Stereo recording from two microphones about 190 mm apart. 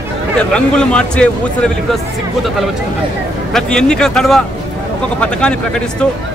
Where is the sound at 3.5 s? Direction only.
5° left (ahead or behind).